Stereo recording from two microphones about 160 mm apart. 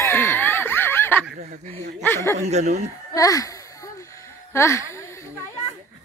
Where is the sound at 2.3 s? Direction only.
45° right (ahead or behind).